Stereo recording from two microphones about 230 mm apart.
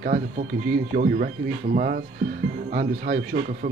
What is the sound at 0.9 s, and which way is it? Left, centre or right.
Speech, right.